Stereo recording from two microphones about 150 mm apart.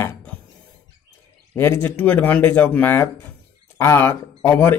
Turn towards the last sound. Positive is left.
turn(degrees=15)  # may be behind; listen again after turning